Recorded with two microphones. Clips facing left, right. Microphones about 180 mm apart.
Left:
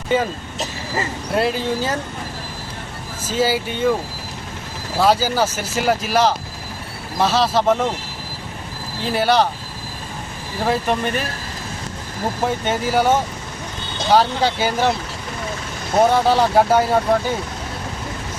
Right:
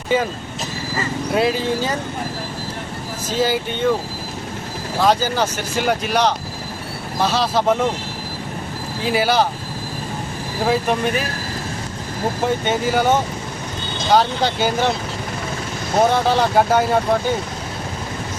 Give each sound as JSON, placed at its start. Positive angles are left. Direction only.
{"t": 1.3, "sound": "speech", "side_deg": 0}
{"t": 3.2, "sound": "speech", "side_deg": 5}
{"t": 4.9, "sound": "speech", "side_deg": 10}
{"t": 9.0, "sound": "speech", "side_deg": 0}
{"t": 10.7, "sound": "speech", "side_deg": 0}
{"t": 12.6, "sound": "speech", "side_deg": 5}
{"t": 14.1, "sound": "speech", "side_deg": 5}
{"t": 16.0, "sound": "speech", "side_deg": 5}